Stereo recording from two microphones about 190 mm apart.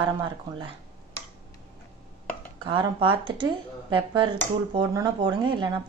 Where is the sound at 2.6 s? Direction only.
25° right (ahead or behind).